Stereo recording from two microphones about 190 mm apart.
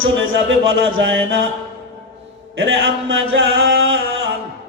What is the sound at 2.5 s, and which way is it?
Music, 90° right.